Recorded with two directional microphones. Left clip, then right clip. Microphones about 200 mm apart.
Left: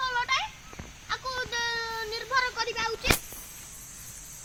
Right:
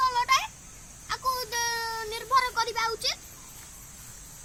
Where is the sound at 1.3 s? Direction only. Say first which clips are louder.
Left 1 dB; 25° right (ahead or behind).